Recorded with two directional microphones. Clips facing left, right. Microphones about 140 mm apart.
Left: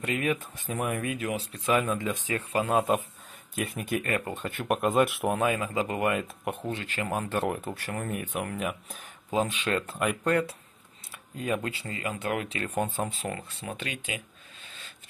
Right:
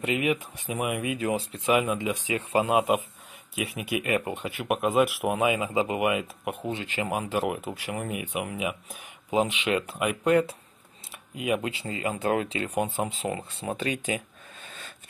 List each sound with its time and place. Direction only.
0.0 s speech: 20° right (ahead or behind)
1.2 s speech: 30° right (ahead or behind)
1.7 s speech: 15° right (ahead or behind)
6.7 s speech: 20° right (ahead or behind)
11.1 s a sound: 15° right (ahead or behind)
11.8 s speech: 25° right (ahead or behind)
12.5 s speech: 15° right (ahead or behind)
13.4 s a sound: 35° right (ahead or behind); by 15.0 s 50° right (ahead or behind)